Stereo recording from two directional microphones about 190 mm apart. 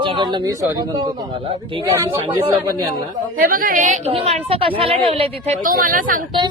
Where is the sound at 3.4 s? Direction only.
50° right (ahead or behind).